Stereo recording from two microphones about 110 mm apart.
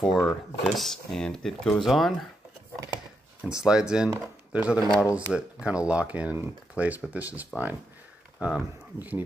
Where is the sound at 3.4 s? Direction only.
5° right (ahead or behind).